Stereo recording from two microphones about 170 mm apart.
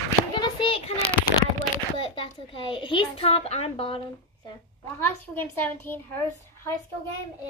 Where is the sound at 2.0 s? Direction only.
30° left (ahead or behind).